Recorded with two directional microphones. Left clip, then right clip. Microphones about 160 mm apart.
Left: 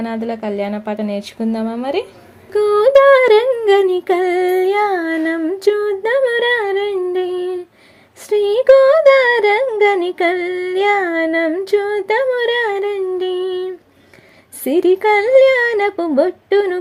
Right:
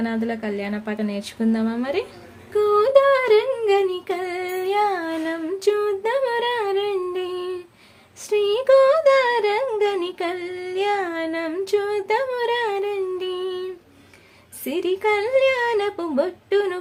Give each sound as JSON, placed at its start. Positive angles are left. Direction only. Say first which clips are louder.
{"t": 0.0, "sound": "a woman's voice", "louder": "left 4 dB", "side_deg": 30}
{"t": 2.5, "sound": "humming", "louder": "left 5 dB", "side_deg": 50}
{"t": 8.3, "sound": "humming", "louder": "left 6 dB", "side_deg": 45}
{"t": 11.5, "sound": "humming", "louder": "left 6 dB", "side_deg": 35}
{"t": 14.6, "sound": "humming", "louder": "left 9 dB", "side_deg": 45}
{"t": 15.8, "sound": "speech", "louder": "left 8 dB", "side_deg": 40}